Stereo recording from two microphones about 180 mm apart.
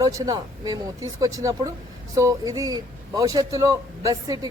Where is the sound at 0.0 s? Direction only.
20° right (ahead or behind).